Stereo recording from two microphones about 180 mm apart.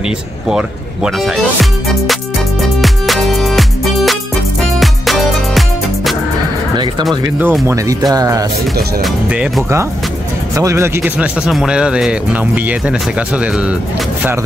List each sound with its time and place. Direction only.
0.5 s speech: 5° right (ahead or behind)
2.8 s music: centre (ahead or behind)
7.2 s speech: 10° right (ahead or behind)
9.0 s speech: 5° right (ahead or behind)
11.4 s speech: 5° right (ahead or behind)